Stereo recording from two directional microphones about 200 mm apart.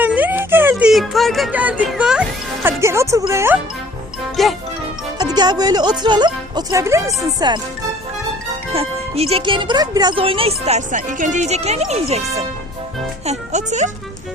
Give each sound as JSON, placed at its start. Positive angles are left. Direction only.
{"t": 0.0, "sound": "music", "side_deg": -10}
{"t": 2.6, "sound": "speech", "side_deg": -15}
{"t": 4.4, "sound": "speech", "side_deg": 0}
{"t": 5.1, "sound": "speech", "side_deg": -20}
{"t": 8.7, "sound": "speech", "side_deg": -30}
{"t": 13.2, "sound": "speech", "side_deg": -35}